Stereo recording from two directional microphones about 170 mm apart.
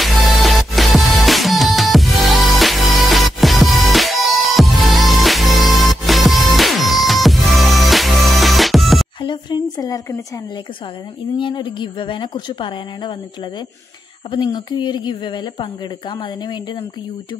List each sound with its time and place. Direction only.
0.0 s music: centre (ahead or behind)
9.2 s a sound: 25° left (ahead or behind)
11.3 s a woman's voice: 30° left (ahead or behind)
14.3 s a woman's voice: 25° left (ahead or behind)